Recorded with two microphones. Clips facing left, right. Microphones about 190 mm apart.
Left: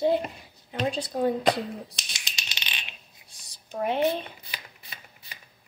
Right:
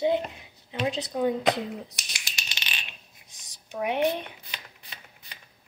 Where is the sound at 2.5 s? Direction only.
20° left (ahead or behind).